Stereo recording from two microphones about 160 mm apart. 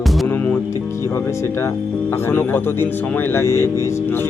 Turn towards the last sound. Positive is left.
turn(degrees=15)  # may be behind; listen again after turning